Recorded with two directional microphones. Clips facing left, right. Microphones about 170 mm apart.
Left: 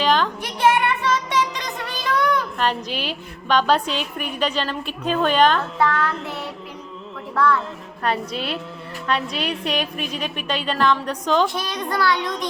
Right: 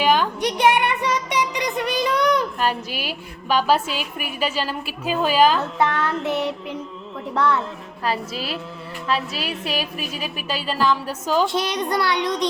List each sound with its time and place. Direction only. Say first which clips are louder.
0.0 s a sound: right 1 dB; 10° right (ahead or behind)
2.6 s a woman's voice: left 1 dB; 10° right (ahead or behind)
6.2 s a woman's voice: right 7 dB; 20° right (ahead or behind)
8.0 s a woman's voice: left 1 dB; 5° right (ahead or behind)
11.4 s a woman's voice: right 3 dB; 20° right (ahead or behind)